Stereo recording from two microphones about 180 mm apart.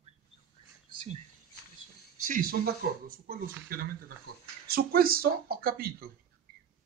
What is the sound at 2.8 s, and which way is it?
Speech, 55° right (ahead or behind).